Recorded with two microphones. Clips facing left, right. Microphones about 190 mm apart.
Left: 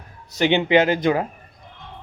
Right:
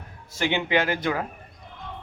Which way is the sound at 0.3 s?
20° left (ahead or behind).